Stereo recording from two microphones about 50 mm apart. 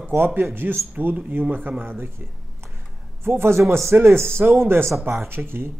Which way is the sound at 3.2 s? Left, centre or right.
Right.